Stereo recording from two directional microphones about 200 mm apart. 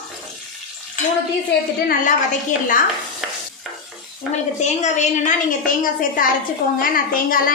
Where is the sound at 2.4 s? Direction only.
40° left (ahead or behind).